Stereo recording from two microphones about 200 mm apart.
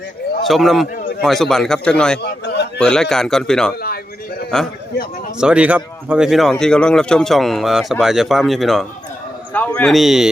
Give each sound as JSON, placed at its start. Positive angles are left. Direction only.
{"t": 0.4, "sound": "speech", "side_deg": 0}
{"t": 2.2, "sound": "a sound", "side_deg": 55}
{"t": 2.7, "sound": "a man's voice", "side_deg": 5}